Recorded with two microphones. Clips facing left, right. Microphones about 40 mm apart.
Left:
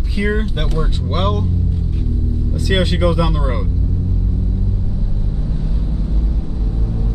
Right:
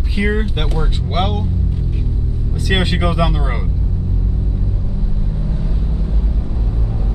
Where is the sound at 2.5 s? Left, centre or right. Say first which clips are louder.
Even; centre.